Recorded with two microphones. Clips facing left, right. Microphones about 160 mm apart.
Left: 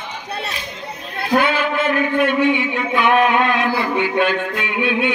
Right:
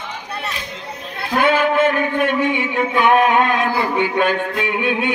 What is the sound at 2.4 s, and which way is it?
Music, 45° right (ahead or behind).